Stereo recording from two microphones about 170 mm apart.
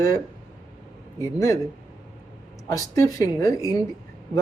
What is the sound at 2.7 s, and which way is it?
Speech, 20° left (ahead or behind).